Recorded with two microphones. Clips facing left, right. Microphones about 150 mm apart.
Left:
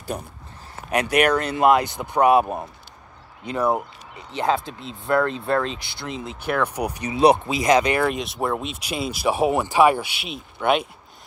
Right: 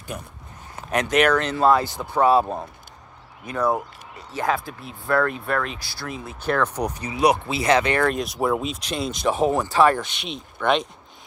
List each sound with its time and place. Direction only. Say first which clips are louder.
0.1 s speech: left 3 dB; 35° left (ahead or behind)
0.9 s speech: even; 10° left (ahead or behind)
4.3 s speech: left 2 dB; 25° left (ahead or behind); by 10.9 s 5° left (ahead or behind)